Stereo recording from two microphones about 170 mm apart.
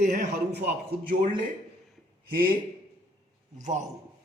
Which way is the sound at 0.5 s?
75° right (ahead or behind).